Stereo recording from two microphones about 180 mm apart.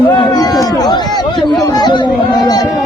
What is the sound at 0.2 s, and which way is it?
Chatter, 20° left (ahead or behind).